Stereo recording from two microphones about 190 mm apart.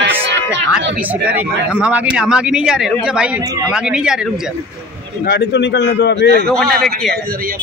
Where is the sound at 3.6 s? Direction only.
5° right (ahead or behind).